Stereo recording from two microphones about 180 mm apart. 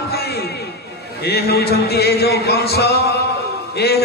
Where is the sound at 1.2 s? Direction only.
60° left (ahead or behind).